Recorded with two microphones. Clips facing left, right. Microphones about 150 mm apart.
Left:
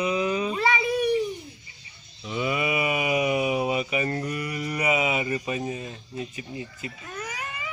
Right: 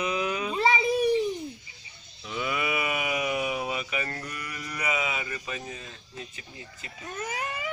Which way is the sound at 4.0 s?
20° left (ahead or behind).